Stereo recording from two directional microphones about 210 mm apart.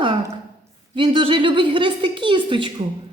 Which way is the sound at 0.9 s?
25° right (ahead or behind).